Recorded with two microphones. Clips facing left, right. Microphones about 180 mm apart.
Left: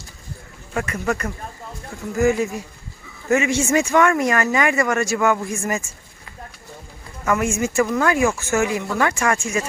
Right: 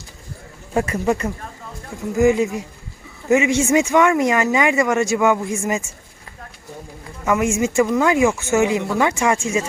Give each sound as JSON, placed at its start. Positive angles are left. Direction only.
{"t": 0.7, "sound": "speech", "side_deg": -30}
{"t": 7.3, "sound": "speech", "side_deg": -15}